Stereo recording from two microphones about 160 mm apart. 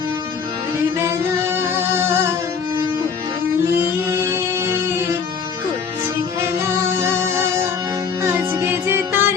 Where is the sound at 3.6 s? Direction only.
15° right (ahead or behind).